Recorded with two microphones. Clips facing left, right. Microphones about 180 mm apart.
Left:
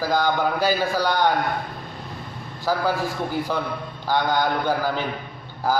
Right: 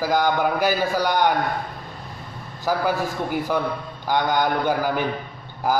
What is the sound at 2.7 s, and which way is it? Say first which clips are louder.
A man's voice: right 1 dB; 15° right (ahead or behind).